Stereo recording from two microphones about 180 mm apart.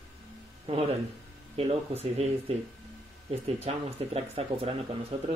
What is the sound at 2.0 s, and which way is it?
Speech, 35° right (ahead or behind).